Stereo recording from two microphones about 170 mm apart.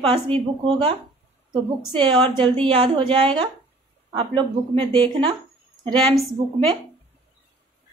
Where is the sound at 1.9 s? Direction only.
25° right (ahead or behind).